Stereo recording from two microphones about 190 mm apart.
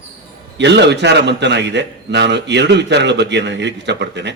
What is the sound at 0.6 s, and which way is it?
A man's voice, 65° right (ahead or behind).